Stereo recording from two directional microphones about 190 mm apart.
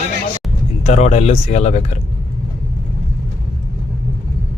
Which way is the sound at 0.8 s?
35° left (ahead or behind).